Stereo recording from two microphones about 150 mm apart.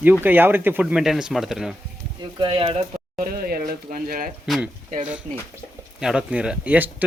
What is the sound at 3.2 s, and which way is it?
Speech, 85° right.